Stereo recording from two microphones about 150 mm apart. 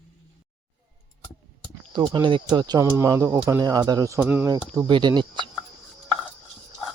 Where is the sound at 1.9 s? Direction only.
30° right (ahead or behind).